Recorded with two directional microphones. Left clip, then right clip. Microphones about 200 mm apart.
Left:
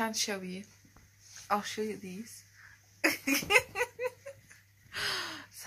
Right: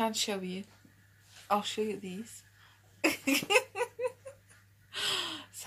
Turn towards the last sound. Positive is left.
turn(degrees=0)  # may be behind; listen again after turning